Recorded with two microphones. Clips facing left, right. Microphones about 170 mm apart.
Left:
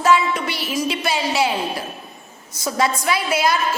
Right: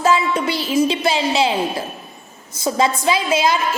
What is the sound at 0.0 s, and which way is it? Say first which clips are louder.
A woman's voice: right 1 dB; 25° right (ahead or behind).